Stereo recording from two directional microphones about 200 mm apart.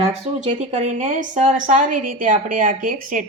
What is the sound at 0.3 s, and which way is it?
A woman's voice, 35° right (ahead or behind).